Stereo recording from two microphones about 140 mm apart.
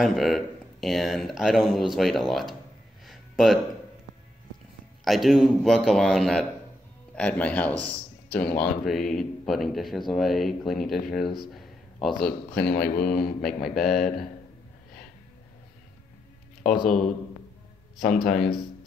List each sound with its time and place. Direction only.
0.0 s speech: centre (ahead or behind)
3.1 s a sound: centre (ahead or behind)
5.0 s speech: centre (ahead or behind)
11.5 s a sound: centre (ahead or behind)
12.5 s speech: 5° left (ahead or behind)
12.9 s speech: 90° left
13.4 s speech: centre (ahead or behind)
16.8 s speech: centre (ahead or behind)